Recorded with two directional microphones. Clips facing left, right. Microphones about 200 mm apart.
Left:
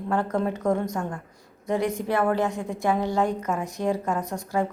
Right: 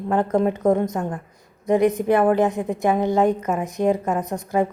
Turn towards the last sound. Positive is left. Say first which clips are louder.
# right 5 dB
turn(degrees=-20)  # may be behind; listen again after turning